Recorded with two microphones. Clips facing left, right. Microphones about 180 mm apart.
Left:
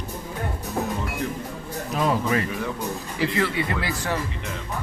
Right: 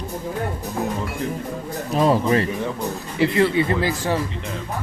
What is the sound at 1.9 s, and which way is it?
Speech, 30° right (ahead or behind).